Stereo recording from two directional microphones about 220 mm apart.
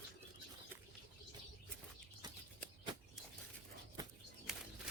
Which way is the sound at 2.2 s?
20° right (ahead or behind).